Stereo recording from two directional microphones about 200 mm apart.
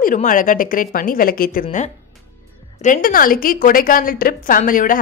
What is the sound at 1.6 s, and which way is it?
Speech, 35° left (ahead or behind).